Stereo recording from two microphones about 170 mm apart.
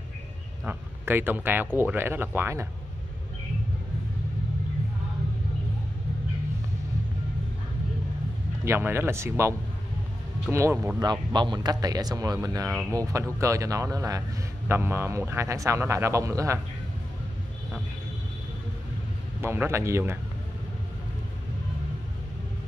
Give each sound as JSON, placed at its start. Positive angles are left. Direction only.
{"t": 0.7, "sound": "speech", "side_deg": -10}
{"t": 8.6, "sound": "speech", "side_deg": -15}
{"t": 11.0, "sound": "speech", "side_deg": -25}
{"t": 19.4, "sound": "speech", "side_deg": -15}